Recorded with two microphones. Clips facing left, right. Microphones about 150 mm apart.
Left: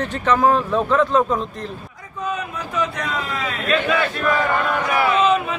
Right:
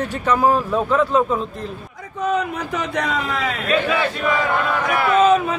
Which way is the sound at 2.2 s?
75° right (ahead or behind).